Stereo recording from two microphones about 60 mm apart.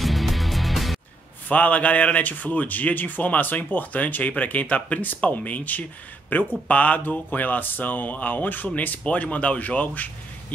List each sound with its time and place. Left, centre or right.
0.0 s music: centre
1.5 s speech: left